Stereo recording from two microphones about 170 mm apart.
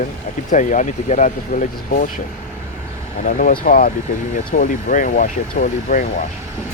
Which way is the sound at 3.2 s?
50° left (ahead or behind).